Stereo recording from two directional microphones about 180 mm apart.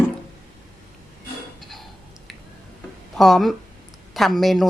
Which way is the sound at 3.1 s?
Centre (ahead or behind).